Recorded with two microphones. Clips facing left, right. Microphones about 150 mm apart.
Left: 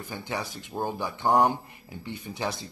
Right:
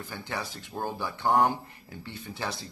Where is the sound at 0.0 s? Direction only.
15° left (ahead or behind).